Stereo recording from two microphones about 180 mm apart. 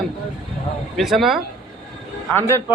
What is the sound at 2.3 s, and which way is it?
Speech, 15° left (ahead or behind).